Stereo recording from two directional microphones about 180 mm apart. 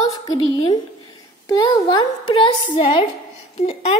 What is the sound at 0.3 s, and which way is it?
Speech, 25° left (ahead or behind).